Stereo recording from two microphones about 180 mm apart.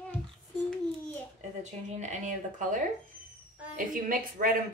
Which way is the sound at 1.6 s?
40° right (ahead or behind).